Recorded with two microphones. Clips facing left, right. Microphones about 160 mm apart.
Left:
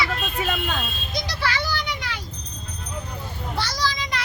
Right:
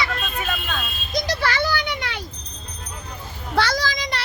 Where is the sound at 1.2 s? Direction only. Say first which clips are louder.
Right 4 dB; 45° right (ahead or behind).